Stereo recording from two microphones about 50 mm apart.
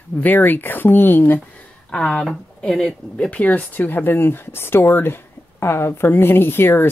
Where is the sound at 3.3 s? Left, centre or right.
Left.